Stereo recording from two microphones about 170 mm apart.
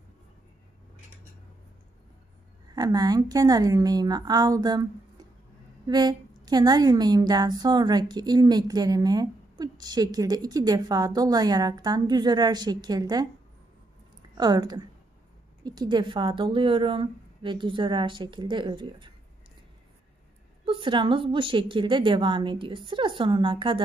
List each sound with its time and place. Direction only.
2.7 s a woman's voice: 25° right (ahead or behind)
14.3 s a woman's voice: 25° right (ahead or behind)
20.6 s a woman's voice: 30° right (ahead or behind)